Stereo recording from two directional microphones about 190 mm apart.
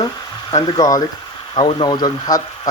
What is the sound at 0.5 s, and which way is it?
Speech, 20° left (ahead or behind).